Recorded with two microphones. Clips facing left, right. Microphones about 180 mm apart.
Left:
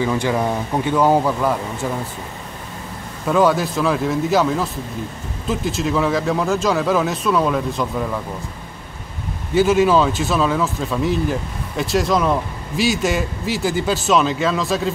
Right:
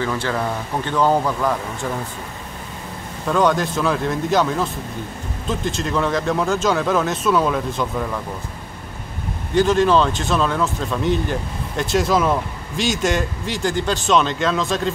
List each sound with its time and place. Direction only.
0.0 s speech: 15° left (ahead or behind)
3.3 s speech: 5° left (ahead or behind)
9.5 s speech: 5° left (ahead or behind)